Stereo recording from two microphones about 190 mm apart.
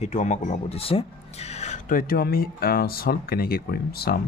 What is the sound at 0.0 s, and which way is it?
Speech, 35° left (ahead or behind).